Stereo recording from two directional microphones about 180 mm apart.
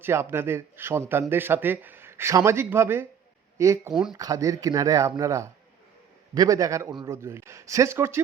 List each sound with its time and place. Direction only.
0.0 s speech: 15° right (ahead or behind)
3.9 s speech: 5° right (ahead or behind)
4.2 s speech: 20° right (ahead or behind)